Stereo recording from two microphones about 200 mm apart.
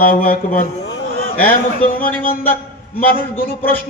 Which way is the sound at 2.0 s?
10° left (ahead or behind).